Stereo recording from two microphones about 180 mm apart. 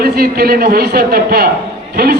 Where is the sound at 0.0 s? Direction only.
60° right (ahead or behind).